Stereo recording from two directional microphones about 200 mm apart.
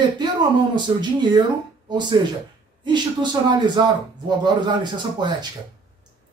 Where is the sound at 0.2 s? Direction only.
20° right (ahead or behind).